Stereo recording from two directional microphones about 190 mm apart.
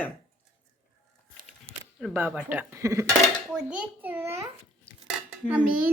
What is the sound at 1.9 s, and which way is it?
A child's voice, 5° right (ahead or behind).